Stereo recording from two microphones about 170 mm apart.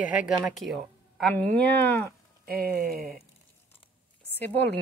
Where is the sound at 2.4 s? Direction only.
60° right (ahead or behind).